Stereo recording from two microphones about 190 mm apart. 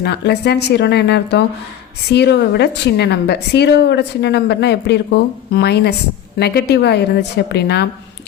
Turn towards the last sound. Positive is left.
turn(degrees=60)  # may be behind; listen again after turning